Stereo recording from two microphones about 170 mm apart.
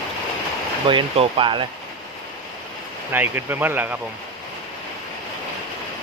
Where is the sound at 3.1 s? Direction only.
10° right (ahead or behind).